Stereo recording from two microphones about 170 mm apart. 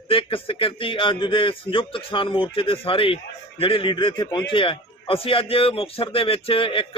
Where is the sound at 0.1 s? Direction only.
30° left (ahead or behind).